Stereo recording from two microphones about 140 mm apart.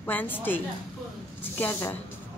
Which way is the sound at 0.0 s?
15° left (ahead or behind).